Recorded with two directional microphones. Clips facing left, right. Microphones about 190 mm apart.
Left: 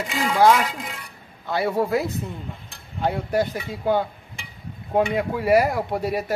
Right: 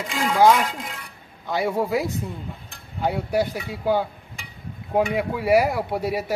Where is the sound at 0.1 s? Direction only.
Centre (ahead or behind).